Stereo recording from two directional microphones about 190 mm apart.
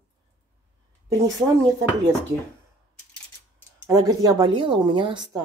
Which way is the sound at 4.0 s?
20° right (ahead or behind).